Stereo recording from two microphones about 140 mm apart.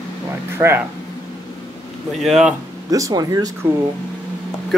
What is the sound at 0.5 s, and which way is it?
Speech, 15° right (ahead or behind).